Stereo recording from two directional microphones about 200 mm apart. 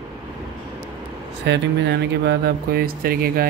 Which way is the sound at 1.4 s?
60° right (ahead or behind).